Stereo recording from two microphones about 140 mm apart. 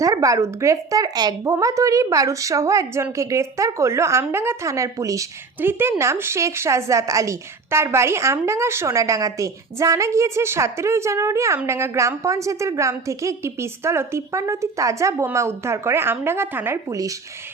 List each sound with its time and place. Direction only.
0.0 s speech: 25° right (ahead or behind)